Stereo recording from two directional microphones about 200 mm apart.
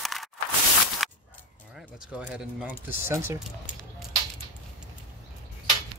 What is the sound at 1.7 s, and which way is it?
Speech, 5° right (ahead or behind).